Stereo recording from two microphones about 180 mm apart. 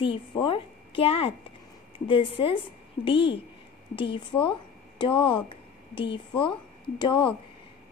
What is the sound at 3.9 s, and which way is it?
A woman's voice, 30° left (ahead or behind).